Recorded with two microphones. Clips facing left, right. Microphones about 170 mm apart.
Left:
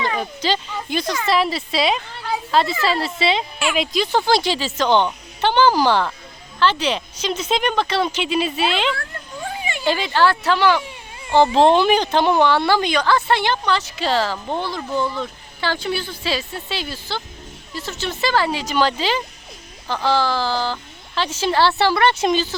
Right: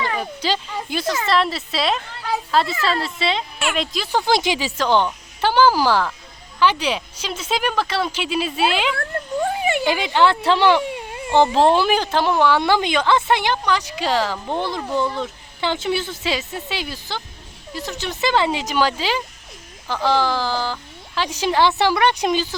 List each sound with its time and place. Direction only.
0.2 s speech: 5° right (ahead or behind)
4.4 s speech: 15° right (ahead or behind)
9.0 s a sound: 50° right (ahead or behind)
9.8 s speech: 15° right (ahead or behind)
10.8 s baby cry: 60° right (ahead or behind)
11.5 s speech: 5° right (ahead or behind)